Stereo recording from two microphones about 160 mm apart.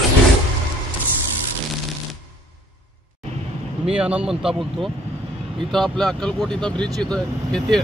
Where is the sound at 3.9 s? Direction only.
5° right (ahead or behind).